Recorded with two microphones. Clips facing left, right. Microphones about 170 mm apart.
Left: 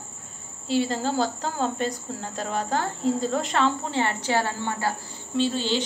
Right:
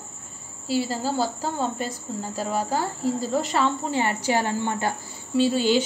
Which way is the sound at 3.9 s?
10° right (ahead or behind).